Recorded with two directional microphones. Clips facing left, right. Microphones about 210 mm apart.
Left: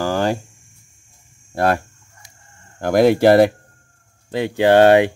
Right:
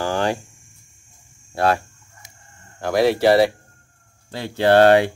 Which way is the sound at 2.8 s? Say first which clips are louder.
Left 4 dB; 50° left (ahead or behind).